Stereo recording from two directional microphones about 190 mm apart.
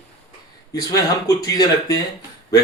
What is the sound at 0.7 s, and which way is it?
Speech, 20° left (ahead or behind).